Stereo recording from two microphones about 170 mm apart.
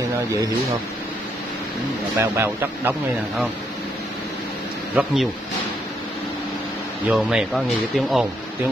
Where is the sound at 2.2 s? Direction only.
15° right (ahead or behind).